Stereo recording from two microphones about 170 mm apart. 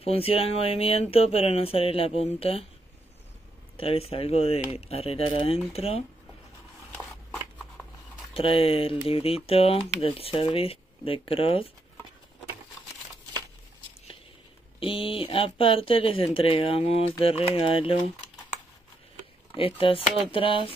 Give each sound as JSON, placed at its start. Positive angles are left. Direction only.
{"t": 0.0, "sound": "speech", "side_deg": 35}
{"t": 3.7, "sound": "speech", "side_deg": 35}
{"t": 7.0, "sound": "a sound", "side_deg": 5}
{"t": 8.3, "sound": "speech", "side_deg": 35}
{"t": 14.8, "sound": "speech", "side_deg": 30}
{"t": 19.5, "sound": "speech", "side_deg": 30}